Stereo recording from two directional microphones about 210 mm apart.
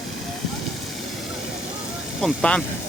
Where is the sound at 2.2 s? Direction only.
5° left (ahead or behind).